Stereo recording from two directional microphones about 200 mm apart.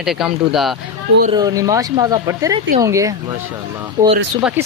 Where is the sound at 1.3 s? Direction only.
20° right (ahead or behind).